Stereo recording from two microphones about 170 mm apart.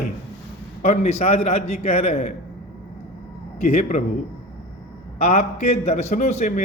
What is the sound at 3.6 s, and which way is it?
Speech, 45° left (ahead or behind).